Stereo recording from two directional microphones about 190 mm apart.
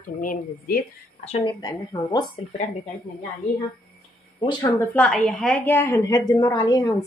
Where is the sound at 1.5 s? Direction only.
20° left (ahead or behind).